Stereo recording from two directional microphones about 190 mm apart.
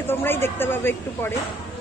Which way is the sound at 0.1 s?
10° left (ahead or behind).